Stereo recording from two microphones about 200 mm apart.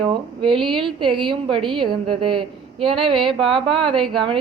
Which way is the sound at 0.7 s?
25° right (ahead or behind).